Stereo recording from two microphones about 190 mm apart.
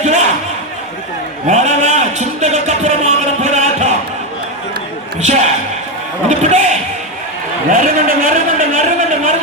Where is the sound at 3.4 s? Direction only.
40° right (ahead or behind).